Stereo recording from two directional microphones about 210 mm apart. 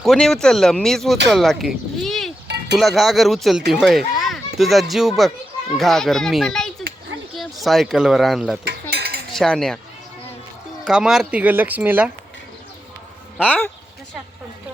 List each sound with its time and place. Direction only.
0.0 s speech: centre (ahead or behind)
8.6 s a sound: 50° right (ahead or behind)
9.3 s speech: centre (ahead or behind)
10.8 s speech: 5° right (ahead or behind)